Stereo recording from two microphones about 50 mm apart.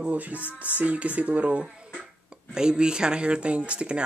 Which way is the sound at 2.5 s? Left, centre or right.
Centre.